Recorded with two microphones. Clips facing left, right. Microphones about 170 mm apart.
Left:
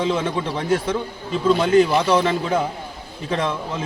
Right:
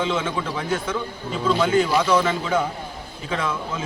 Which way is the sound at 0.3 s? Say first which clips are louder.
Left 4 dB; 30° left (ahead or behind).